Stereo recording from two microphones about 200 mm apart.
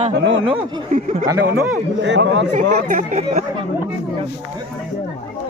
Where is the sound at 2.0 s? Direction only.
60° right (ahead or behind).